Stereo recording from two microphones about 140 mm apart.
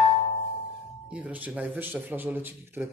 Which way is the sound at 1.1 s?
10° right (ahead or behind).